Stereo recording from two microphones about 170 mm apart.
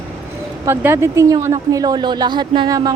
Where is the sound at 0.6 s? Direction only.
15° right (ahead or behind).